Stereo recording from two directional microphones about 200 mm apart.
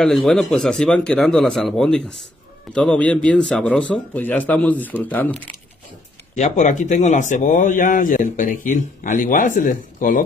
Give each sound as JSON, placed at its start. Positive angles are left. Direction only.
{"t": 0.0, "sound": "speech", "side_deg": 0}
{"t": 6.3, "sound": "speech", "side_deg": 35}